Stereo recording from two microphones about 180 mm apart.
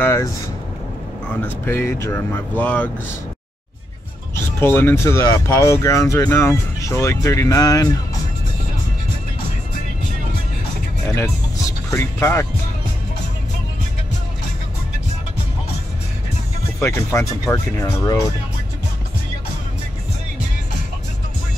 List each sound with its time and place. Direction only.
0.0 s vehicle: 15° left (ahead or behind)
1.3 s speech: 15° left (ahead or behind)
4.6 s speech: 10° left (ahead or behind)
11.1 s music: 15° left (ahead or behind)
11.9 s speech: 15° left (ahead or behind)
16.8 s speech: 15° left (ahead or behind)